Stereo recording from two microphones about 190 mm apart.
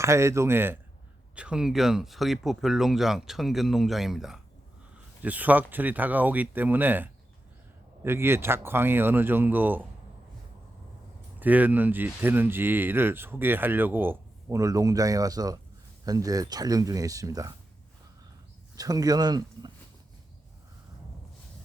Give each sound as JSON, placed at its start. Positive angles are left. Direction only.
{"t": 0.0, "sound": "speech", "side_deg": -15}
{"t": 11.3, "sound": "speech", "side_deg": -10}
{"t": 18.8, "sound": "speech", "side_deg": -20}